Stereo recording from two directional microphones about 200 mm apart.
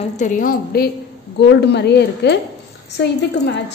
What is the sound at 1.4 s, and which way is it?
A woman's voice, 60° left (ahead or behind).